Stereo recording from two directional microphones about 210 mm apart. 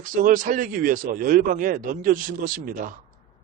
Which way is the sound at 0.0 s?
40° right (ahead or behind).